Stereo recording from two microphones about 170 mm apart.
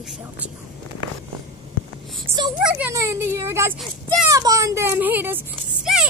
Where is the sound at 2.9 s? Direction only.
20° right (ahead or behind).